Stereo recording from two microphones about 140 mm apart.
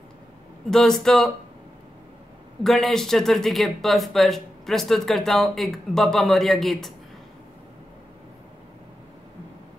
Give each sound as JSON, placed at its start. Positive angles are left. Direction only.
{"t": 0.7, "sound": "speech", "side_deg": 5}
{"t": 2.6, "sound": "speech", "side_deg": 0}